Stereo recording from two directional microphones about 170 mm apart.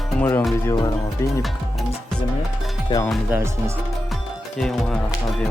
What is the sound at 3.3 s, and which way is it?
Speech, 15° right (ahead or behind).